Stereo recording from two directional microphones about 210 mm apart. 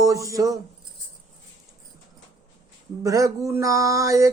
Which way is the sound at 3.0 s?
15° right (ahead or behind).